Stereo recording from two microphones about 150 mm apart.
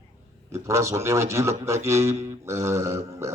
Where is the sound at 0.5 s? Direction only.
20° right (ahead or behind).